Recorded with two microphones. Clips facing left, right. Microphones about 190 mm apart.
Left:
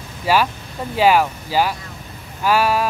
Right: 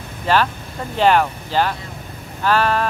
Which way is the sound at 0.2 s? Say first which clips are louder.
Even; 10° left (ahead or behind).